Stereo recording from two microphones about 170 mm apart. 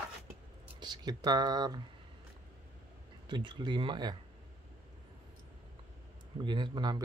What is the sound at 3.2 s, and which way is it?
Speech, 30° right (ahead or behind).